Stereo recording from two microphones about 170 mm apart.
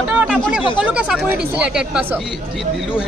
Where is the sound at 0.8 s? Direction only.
5° right (ahead or behind).